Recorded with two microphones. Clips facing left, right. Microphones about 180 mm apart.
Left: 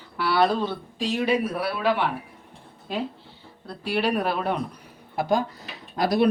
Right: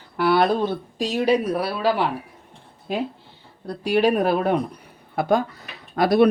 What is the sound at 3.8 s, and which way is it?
Speech, 45° right (ahead or behind).